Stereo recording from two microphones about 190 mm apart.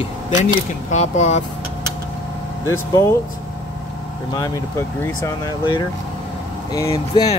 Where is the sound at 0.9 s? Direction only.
35° left (ahead or behind).